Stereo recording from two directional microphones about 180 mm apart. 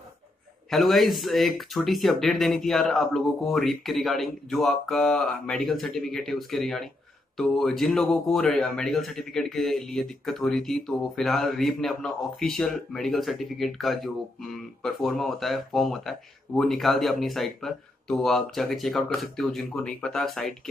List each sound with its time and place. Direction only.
0.7 s speech: centre (ahead or behind)